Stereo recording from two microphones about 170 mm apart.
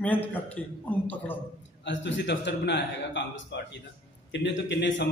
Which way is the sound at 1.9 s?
90° left.